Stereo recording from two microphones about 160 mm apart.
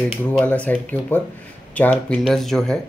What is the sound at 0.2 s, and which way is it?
Speech, 10° left (ahead or behind).